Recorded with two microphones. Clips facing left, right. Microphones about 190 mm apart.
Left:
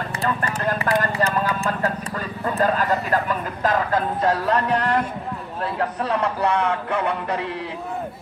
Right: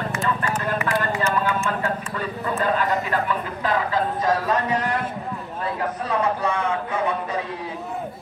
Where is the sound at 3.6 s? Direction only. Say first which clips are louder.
Left 2 dB; 45° left (ahead or behind).